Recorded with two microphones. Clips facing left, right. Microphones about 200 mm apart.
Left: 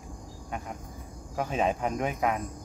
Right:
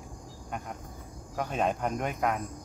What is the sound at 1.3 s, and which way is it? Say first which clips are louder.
Speech: left 2 dB; centre (ahead or behind).